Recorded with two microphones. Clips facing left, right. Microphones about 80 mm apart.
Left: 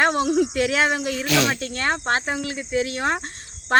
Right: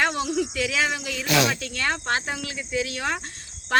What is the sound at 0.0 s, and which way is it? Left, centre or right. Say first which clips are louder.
Speech: left 5 dB; left.